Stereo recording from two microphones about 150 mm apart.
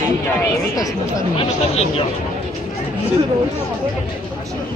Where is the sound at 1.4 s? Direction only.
40° left (ahead or behind).